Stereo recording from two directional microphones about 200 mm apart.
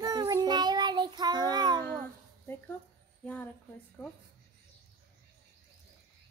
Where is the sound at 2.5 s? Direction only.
10° left (ahead or behind).